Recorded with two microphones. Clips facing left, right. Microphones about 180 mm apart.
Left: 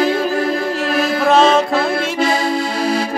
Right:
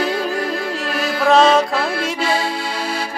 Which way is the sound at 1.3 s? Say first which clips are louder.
Even; centre (ahead or behind).